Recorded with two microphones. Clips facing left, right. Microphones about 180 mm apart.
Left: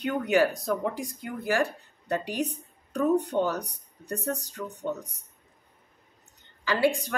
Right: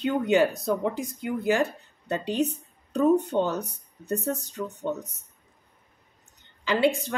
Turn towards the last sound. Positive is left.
turn(degrees=-25)  # may be behind; listen again after turning